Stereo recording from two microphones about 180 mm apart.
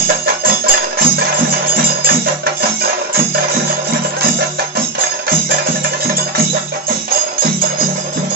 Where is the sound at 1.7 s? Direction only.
55° right (ahead or behind).